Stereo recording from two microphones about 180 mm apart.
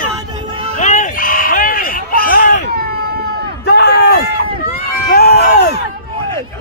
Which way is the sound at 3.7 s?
60° left (ahead or behind).